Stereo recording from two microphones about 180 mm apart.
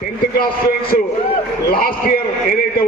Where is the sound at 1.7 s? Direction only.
55° left (ahead or behind).